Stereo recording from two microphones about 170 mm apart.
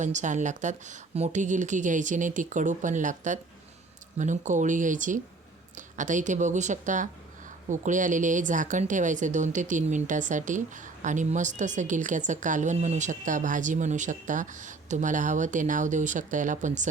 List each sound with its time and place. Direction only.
0.0 s a woman's voice: 45° right (ahead or behind)